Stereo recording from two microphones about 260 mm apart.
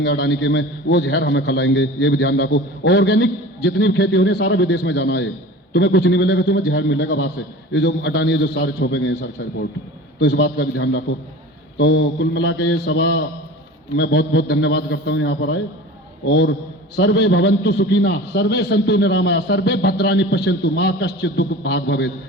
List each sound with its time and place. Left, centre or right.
0.0 s a man's voice: left